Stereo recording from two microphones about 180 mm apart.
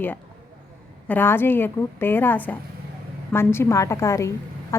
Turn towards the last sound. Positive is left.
turn(degrees=15)  # may be behind; listen again after turning